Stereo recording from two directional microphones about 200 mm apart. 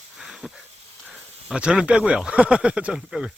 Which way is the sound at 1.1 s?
5° right (ahead or behind).